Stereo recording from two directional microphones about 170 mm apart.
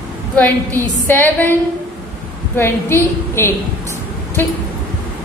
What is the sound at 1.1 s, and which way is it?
Speech, 10° left (ahead or behind).